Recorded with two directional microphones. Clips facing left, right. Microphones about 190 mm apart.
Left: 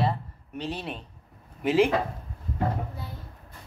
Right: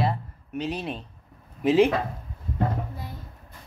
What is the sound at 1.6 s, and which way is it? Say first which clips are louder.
Speech: right 3 dB; 20° right (ahead or behind).